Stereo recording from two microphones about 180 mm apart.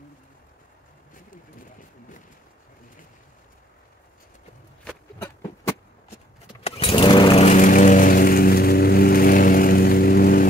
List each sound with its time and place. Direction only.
6.6 s vehicle: 30° left (ahead or behind); by 10.4 s 55° left (ahead or behind)